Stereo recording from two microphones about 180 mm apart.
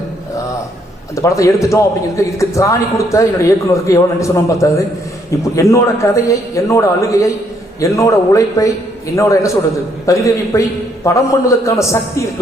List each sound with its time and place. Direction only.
1.1 s a man's voice: 15° left (ahead or behind)